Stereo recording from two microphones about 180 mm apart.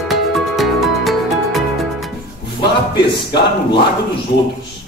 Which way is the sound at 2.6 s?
25° left (ahead or behind).